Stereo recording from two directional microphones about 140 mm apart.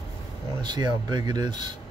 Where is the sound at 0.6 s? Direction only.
30° right (ahead or behind).